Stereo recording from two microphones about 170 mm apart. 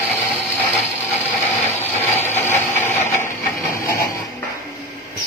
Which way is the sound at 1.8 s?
10° left (ahead or behind).